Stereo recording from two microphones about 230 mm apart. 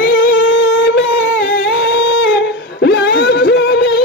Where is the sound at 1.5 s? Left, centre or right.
Left.